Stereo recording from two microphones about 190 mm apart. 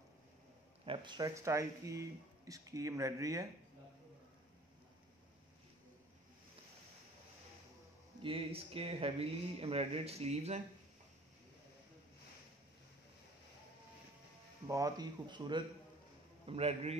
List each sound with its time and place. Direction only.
0.8 s speech: 25° right (ahead or behind)
8.2 s speech: 30° right (ahead or behind)
14.7 s speech: 20° right (ahead or behind)